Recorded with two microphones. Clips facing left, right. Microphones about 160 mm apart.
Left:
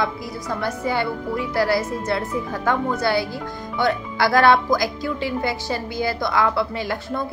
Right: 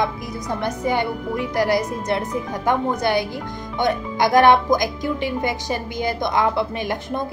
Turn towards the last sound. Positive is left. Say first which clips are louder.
# right 1 dB
turn(degrees=-20)  # may be behind; listen again after turning